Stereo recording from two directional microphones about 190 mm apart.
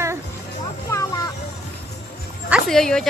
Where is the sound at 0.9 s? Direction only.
20° left (ahead or behind).